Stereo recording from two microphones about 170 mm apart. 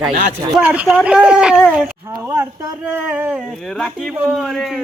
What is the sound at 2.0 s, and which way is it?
Speech, 15° right (ahead or behind).